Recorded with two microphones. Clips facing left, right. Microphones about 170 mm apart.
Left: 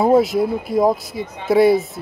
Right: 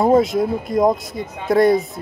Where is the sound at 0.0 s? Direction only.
5° left (ahead or behind).